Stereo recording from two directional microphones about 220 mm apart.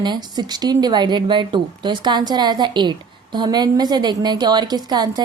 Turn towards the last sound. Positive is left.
turn(degrees=-20)  # may be behind; listen again after turning